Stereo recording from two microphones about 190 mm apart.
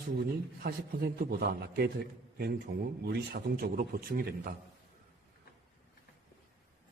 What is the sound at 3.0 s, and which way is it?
Speech, 55° right (ahead or behind).